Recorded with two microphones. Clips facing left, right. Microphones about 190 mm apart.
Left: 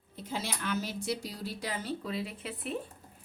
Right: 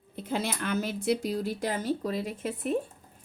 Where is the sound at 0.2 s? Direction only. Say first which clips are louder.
Right 6 dB; 55° right (ahead or behind).